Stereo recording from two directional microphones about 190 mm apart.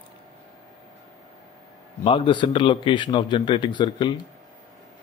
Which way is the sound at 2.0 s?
30° left (ahead or behind).